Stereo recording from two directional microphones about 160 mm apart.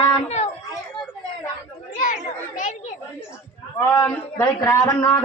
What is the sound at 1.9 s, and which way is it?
Children playing, 55° left (ahead or behind).